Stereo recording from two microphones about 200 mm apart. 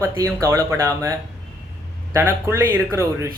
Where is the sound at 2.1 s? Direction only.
10° right (ahead or behind).